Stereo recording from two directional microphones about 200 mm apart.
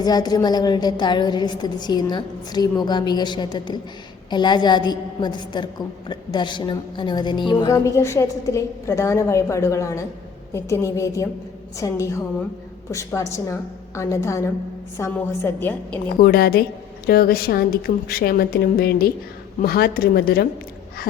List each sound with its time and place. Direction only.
0.0 s a woman's voice: 20° left (ahead or behind)
16.2 s a woman's voice: 50° left (ahead or behind)